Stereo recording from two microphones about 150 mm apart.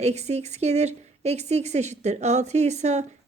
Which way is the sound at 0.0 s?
45° right (ahead or behind).